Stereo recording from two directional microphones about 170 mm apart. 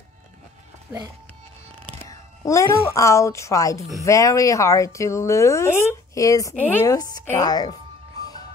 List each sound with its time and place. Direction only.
0.9 s speech: 10° right (ahead or behind)
2.0 s a woman's voice: 20° left (ahead or behind)